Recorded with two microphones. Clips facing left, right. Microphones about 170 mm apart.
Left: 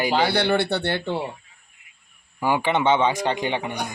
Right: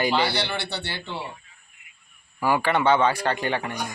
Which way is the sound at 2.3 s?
20° left (ahead or behind).